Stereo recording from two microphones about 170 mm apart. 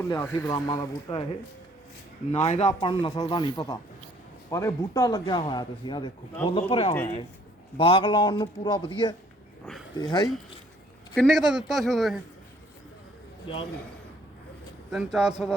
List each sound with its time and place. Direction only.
0.0 s speech: 15° left (ahead or behind)
2.3 s speech: 40° left (ahead or behind)
2.6 s speech: 30° left (ahead or behind)
11.1 s a man's voice: centre (ahead or behind)
13.5 s speech: 30° left (ahead or behind)
14.8 s a man's voice: 5° right (ahead or behind)